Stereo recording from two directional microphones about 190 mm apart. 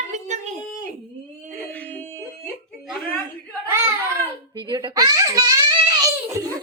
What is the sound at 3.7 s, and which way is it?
Speech, 15° right (ahead or behind).